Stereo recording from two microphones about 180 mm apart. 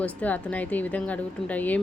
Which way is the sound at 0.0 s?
10° left (ahead or behind).